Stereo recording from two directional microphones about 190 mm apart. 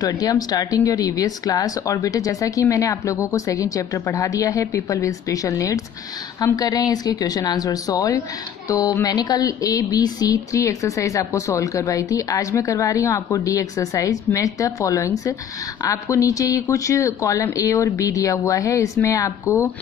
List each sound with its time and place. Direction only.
0.0 s a woman's voice: 20° left (ahead or behind)